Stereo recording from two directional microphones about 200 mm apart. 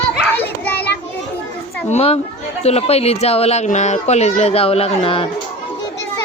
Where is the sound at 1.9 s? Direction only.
30° left (ahead or behind).